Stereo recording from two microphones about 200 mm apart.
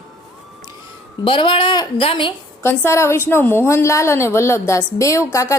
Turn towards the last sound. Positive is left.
turn(degrees=15)  # may be behind; listen again after turning